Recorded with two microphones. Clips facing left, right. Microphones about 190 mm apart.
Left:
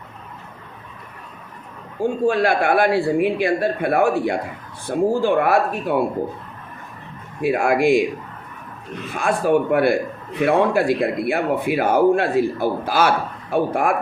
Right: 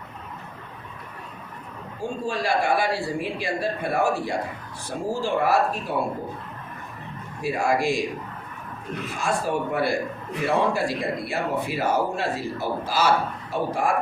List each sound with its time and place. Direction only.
2.2 s a man's voice: 60° left (ahead or behind)
7.4 s a man's voice: 55° left (ahead or behind)
9.1 s a man's voice: 55° left (ahead or behind)